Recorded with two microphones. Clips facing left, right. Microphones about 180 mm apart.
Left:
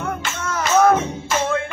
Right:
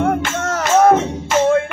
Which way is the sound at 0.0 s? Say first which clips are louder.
Right 8 dB; 70° right (ahead or behind).